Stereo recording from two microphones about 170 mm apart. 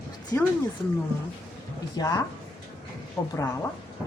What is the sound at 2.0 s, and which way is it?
Speech, 20° left (ahead or behind).